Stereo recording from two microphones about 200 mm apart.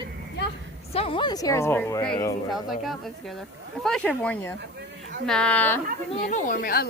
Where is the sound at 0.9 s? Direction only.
30° left (ahead or behind).